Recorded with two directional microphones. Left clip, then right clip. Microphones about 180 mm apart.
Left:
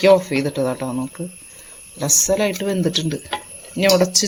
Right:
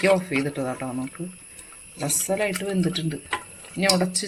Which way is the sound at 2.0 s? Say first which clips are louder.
Left 7 dB; 30° left (ahead or behind).